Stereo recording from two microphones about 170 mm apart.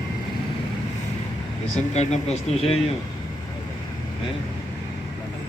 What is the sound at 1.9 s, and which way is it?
Speech, 40° left (ahead or behind).